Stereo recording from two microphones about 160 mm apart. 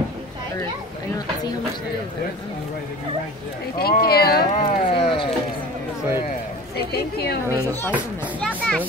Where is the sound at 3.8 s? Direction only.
75° left (ahead or behind).